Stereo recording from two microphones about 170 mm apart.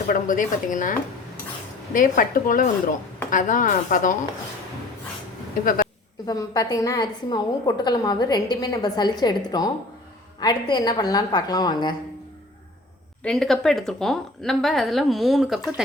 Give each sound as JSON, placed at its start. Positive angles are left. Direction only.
{"t": 0.1, "sound": "a woman's voice", "side_deg": 50}
{"t": 6.2, "sound": "a woman's voice", "side_deg": 20}
{"t": 13.2, "sound": "a woman's voice", "side_deg": 0}